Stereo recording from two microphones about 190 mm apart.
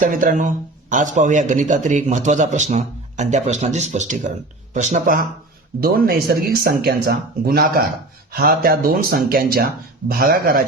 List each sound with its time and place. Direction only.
0.0 s a man's voice: 45° right (ahead or behind)